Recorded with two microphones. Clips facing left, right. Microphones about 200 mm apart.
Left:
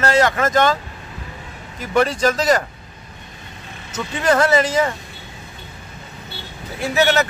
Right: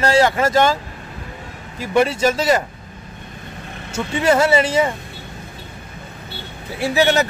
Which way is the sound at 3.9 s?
10° right (ahead or behind).